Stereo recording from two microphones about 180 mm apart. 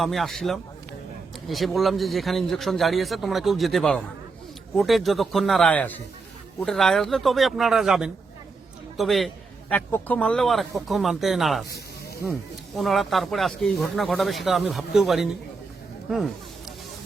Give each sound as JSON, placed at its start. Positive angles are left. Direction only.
{"t": 0.0, "sound": "speech", "side_deg": 0}